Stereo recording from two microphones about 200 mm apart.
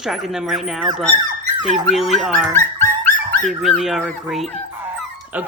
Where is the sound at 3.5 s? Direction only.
Centre (ahead or behind).